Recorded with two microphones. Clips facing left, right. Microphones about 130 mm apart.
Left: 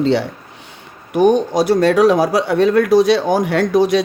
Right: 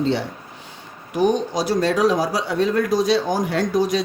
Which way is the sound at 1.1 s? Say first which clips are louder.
Left 6 dB; 55° left (ahead or behind).